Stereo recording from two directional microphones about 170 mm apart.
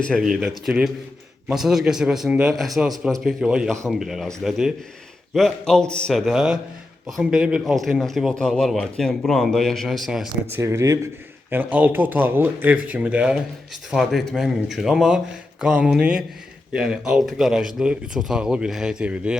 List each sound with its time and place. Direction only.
0.0 s a man's voice: centre (ahead or behind)
10.5 s a man's voice: 15° right (ahead or behind)